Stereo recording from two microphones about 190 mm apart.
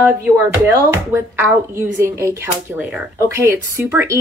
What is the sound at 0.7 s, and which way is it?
Speech, 15° right (ahead or behind).